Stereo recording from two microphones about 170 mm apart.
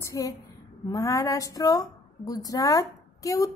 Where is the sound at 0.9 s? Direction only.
20° left (ahead or behind).